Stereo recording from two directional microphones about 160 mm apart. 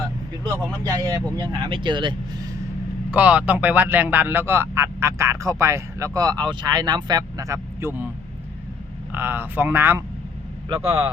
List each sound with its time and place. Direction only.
0.9 s speech: 20° right (ahead or behind)
3.1 s a man's voice: 10° right (ahead or behind)
9.1 s a man's voice: 10° right (ahead or behind)
10.7 s speech: 35° right (ahead or behind)